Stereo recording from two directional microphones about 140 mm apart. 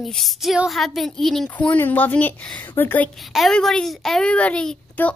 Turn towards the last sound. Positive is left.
turn(degrees=10)  # may be behind; listen again after turning